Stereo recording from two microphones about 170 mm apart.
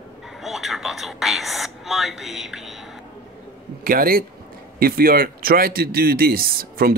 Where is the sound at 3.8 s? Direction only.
60° right (ahead or behind).